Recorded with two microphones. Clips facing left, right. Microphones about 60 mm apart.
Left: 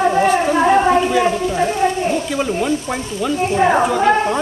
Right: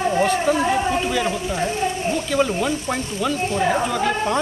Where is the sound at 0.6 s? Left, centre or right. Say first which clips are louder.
Left 7 dB; left.